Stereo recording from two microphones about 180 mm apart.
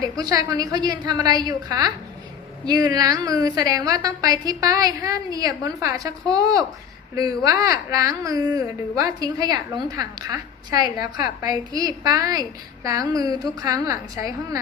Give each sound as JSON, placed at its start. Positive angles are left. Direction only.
{"t": 0.2, "sound": "a woman's voice", "side_deg": -20}